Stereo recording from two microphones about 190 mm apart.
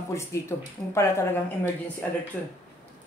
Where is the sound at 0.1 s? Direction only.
15° left (ahead or behind).